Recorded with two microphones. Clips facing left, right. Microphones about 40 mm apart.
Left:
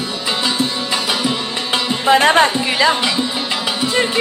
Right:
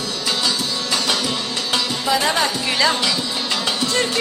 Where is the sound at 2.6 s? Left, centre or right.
Centre.